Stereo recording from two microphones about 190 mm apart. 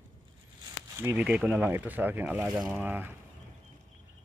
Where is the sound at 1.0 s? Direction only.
10° right (ahead or behind).